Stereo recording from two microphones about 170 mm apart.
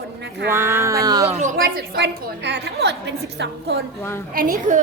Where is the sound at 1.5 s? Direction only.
60° right (ahead or behind); by 3.8 s 90° right.